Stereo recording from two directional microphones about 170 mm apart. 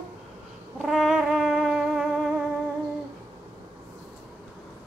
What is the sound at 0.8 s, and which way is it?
Brass instrument, centre (ahead or behind).